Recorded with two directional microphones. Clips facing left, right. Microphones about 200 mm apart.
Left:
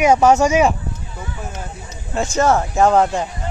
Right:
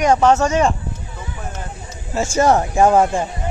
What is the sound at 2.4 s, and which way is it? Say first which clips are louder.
Speech: right 1 dB; 15° right (ahead or behind).